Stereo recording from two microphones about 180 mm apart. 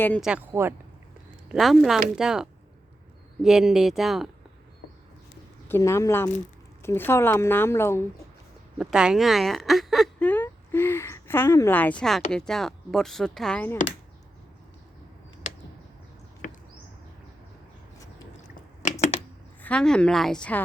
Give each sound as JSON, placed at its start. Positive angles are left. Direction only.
{"t": 0.0, "sound": "a woman's voice", "side_deg": 10}
{"t": 0.3, "sound": "speech", "side_deg": -10}
{"t": 1.5, "sound": "speech", "side_deg": 0}
{"t": 5.6, "sound": "a woman's voice", "side_deg": 15}
{"t": 8.8, "sound": "speech", "side_deg": -5}
{"t": 18.8, "sound": "a sound", "side_deg": 40}
{"t": 19.6, "sound": "speech", "side_deg": 5}